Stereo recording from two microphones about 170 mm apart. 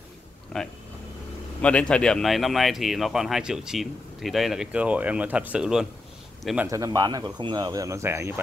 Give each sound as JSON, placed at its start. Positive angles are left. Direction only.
{"t": 1.6, "sound": "a man's voice", "side_deg": 5}
{"t": 6.7, "sound": "speech", "side_deg": -20}